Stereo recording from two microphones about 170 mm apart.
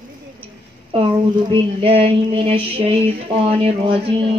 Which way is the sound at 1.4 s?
30° right (ahead or behind).